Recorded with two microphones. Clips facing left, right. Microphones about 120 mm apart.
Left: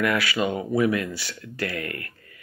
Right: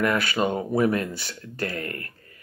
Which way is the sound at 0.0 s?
45° right (ahead or behind).